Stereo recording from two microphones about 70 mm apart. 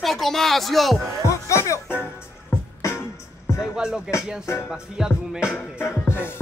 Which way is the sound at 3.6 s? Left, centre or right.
Centre.